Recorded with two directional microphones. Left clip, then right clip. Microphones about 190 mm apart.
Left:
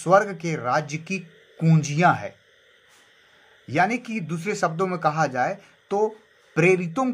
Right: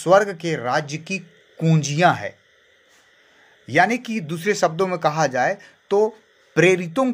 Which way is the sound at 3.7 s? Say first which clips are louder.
Right 4 dB; 40° right (ahead or behind).